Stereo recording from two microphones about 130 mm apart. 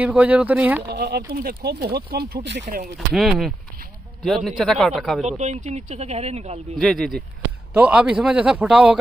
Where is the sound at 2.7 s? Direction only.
90° right.